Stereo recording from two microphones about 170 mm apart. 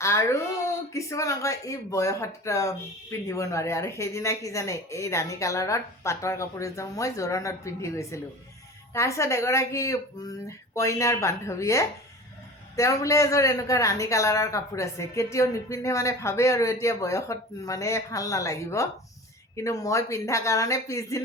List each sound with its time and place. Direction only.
0.0 s a man's voice: 15° left (ahead or behind)